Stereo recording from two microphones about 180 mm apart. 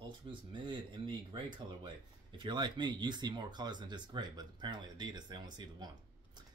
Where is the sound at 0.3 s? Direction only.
25° right (ahead or behind).